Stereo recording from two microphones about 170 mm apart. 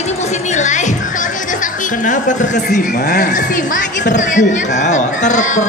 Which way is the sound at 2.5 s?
70° left (ahead or behind).